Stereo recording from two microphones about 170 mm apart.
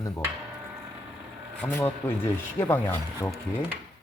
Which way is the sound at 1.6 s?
10° left (ahead or behind).